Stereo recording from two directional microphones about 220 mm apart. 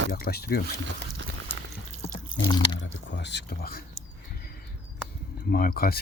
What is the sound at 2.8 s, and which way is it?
Speech, 55° left (ahead or behind).